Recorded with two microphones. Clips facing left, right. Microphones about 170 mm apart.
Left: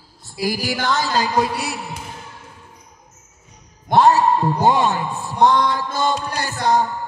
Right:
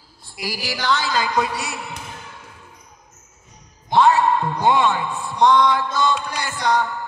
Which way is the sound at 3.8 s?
45° left (ahead or behind).